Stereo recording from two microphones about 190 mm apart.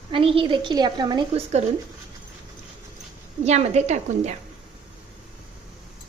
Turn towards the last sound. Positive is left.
turn(degrees=-35)  # may be behind; listen again after turning